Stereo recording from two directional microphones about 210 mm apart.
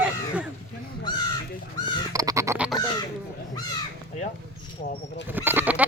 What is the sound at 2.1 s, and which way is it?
Bird, 15° right (ahead or behind).